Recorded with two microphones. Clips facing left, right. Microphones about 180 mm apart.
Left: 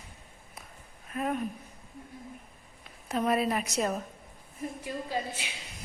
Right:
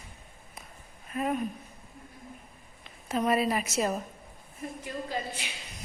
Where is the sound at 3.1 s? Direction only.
Centre (ahead or behind).